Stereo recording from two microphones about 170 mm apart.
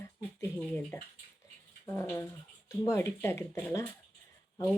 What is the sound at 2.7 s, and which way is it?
Speech, 15° left (ahead or behind).